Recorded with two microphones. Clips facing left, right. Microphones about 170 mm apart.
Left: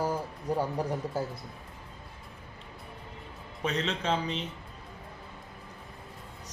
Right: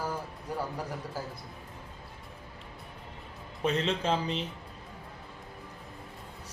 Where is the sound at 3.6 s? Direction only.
Centre (ahead or behind).